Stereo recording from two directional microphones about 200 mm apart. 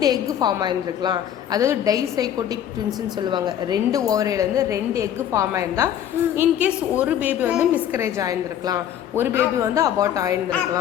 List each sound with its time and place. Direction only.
0.0 s a woman's voice: 20° right (ahead or behind)